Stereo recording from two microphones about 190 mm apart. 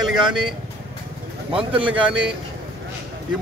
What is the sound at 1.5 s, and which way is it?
Speech, 5° right (ahead or behind).